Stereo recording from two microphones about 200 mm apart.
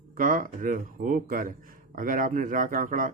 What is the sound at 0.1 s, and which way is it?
A man's voice, 45° right (ahead or behind).